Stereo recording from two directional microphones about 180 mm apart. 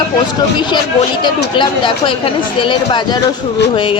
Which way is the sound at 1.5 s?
25° left (ahead or behind).